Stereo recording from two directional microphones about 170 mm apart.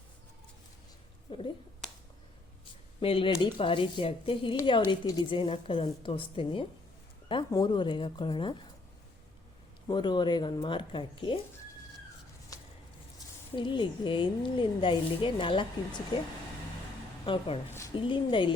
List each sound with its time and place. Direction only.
1.3 s speech: 30° left (ahead or behind)
3.0 s speech: 30° left (ahead or behind)
9.9 s speech: 25° left (ahead or behind)
12.5 s a sound: 20° left (ahead or behind)
13.6 s speech: 30° left (ahead or behind)
17.2 s speech: 30° left (ahead or behind)